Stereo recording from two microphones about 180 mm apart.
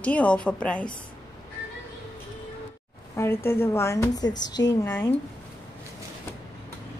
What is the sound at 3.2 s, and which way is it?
A woman's voice, 15° left (ahead or behind).